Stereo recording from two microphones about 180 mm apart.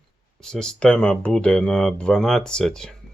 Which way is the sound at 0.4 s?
5° left (ahead or behind).